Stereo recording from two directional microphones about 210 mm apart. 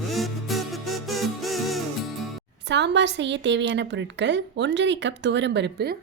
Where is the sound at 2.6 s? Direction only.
55° right (ahead or behind).